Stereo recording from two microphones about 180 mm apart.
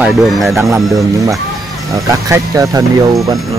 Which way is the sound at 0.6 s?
20° right (ahead or behind).